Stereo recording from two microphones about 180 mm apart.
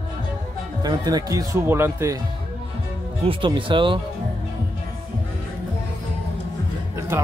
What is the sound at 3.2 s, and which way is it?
Speech, 30° right (ahead or behind).